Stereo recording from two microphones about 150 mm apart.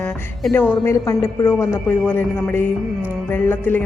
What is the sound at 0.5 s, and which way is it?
A woman's voice, 15° left (ahead or behind).